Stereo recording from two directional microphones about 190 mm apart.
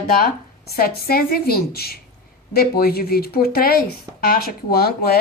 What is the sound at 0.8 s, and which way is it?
A woman's voice, 50° left (ahead or behind).